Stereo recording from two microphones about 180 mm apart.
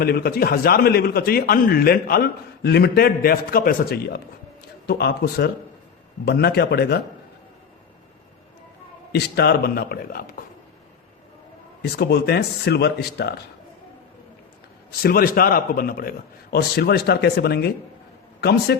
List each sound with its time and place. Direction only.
0.0 s a man's voice: 60° left (ahead or behind)
9.1 s a man's voice: 65° left (ahead or behind)
11.8 s a man's voice: 65° left (ahead or behind)
14.8 s a man's voice: 55° left (ahead or behind)